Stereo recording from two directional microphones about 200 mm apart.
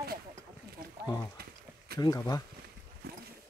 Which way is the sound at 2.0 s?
20° left (ahead or behind).